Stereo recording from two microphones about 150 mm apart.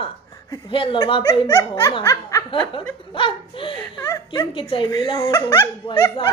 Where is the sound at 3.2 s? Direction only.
35° left (ahead or behind).